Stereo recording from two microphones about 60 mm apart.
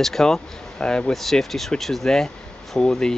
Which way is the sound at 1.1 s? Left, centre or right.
Centre.